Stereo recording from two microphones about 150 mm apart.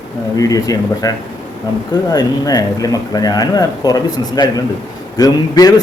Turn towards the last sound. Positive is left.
turn(degrees=25)  # may be behind; listen again after turning